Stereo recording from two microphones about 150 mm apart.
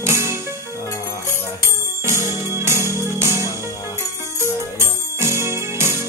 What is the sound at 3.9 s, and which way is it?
Music, 15° right (ahead or behind).